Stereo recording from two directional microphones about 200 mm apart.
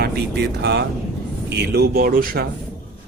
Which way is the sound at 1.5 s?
55° right (ahead or behind).